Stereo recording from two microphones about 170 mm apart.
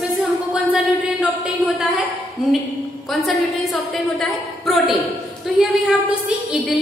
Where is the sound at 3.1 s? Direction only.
Centre (ahead or behind).